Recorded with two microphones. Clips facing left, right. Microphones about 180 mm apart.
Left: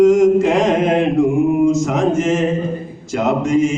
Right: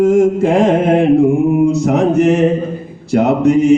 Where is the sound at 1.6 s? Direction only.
65° right (ahead or behind).